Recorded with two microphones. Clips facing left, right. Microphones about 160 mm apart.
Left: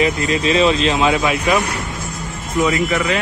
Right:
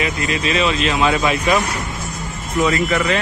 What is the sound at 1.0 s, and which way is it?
Speech, 10° left (ahead or behind).